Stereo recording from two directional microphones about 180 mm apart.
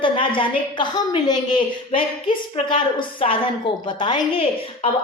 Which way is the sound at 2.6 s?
30° left (ahead or behind).